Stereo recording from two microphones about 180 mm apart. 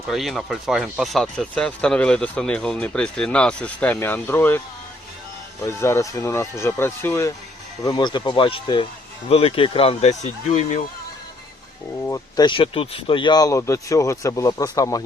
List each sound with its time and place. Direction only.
0.1 s speech: centre (ahead or behind)
5.6 s speech: 15° left (ahead or behind)
7.9 s speech: 25° left (ahead or behind)
12.0 s speech: 20° left (ahead or behind)